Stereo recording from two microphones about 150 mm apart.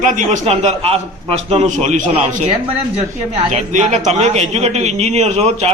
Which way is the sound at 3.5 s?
50° right (ahead or behind).